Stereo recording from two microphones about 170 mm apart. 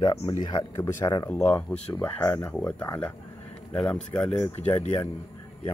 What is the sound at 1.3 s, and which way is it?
Speech, 10° left (ahead or behind).